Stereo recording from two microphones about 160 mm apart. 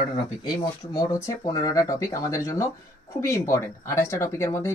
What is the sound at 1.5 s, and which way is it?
Speech, 20° left (ahead or behind).